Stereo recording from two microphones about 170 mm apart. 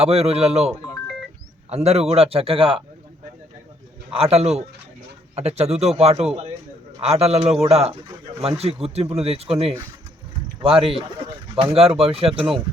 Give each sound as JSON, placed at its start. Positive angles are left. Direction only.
{"t": 0.0, "sound": "a man's voice", "side_deg": -35}
{"t": 1.7, "sound": "a man's voice", "side_deg": -40}
{"t": 4.1, "sound": "a man's voice", "side_deg": -35}
{"t": 10.6, "sound": "a man's voice", "side_deg": -30}